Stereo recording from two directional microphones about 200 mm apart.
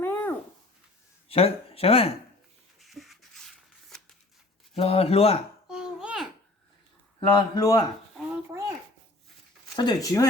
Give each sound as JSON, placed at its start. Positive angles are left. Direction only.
{"t": 0.0, "sound": "dog", "side_deg": 10}
{"t": 1.3, "sound": "speech", "side_deg": 30}
{"t": 2.7, "sound": "shuffling cards", "side_deg": 0}
{"t": 4.7, "sound": "speech", "side_deg": 30}
{"t": 5.6, "sound": "babbling", "side_deg": -5}
{"t": 7.2, "sound": "speech", "side_deg": 20}
{"t": 9.7, "sound": "speech", "side_deg": 20}